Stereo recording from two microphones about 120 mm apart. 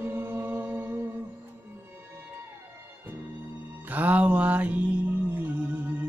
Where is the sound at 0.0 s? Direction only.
20° right (ahead or behind).